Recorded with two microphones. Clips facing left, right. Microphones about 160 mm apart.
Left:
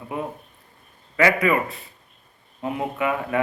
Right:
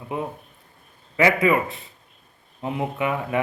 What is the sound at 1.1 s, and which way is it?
A man's voice, 20° right (ahead or behind).